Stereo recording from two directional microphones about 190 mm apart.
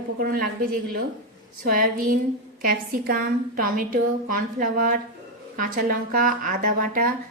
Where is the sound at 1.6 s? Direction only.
45° right (ahead or behind).